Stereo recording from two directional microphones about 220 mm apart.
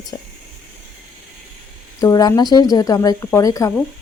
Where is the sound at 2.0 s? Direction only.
15° left (ahead or behind).